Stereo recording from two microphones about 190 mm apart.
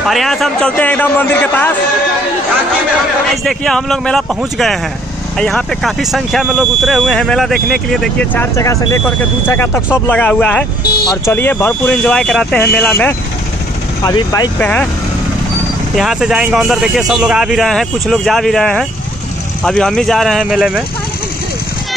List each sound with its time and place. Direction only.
0.1 s a man's voice: centre (ahead or behind)
3.4 s a man's voice: centre (ahead or behind)
14.0 s speech: 20° left (ahead or behind)
14.6 s a man's voice: 5° left (ahead or behind)
16.0 s speech: centre (ahead or behind)